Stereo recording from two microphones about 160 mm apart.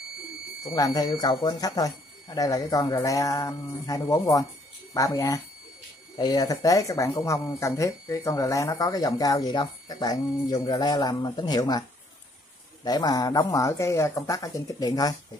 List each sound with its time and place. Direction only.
0.7 s speech: 25° left (ahead or behind)
12.8 s speech: 25° left (ahead or behind)